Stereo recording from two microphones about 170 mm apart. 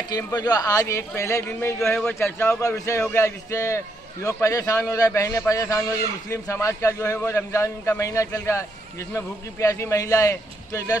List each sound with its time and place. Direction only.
0.1 s a man's voice: 20° left (ahead or behind)